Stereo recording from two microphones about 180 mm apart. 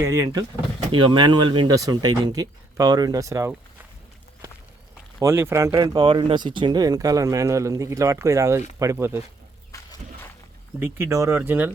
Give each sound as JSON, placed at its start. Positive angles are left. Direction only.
{"t": 0.0, "sound": "speech", "side_deg": -20}
{"t": 5.2, "sound": "speech", "side_deg": -15}
{"t": 10.8, "sound": "speech", "side_deg": -10}